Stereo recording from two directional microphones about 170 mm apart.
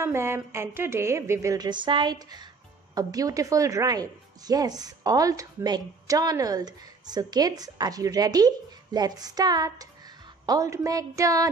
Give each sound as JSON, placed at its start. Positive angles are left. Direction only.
{"t": 0.0, "sound": "speech", "side_deg": -15}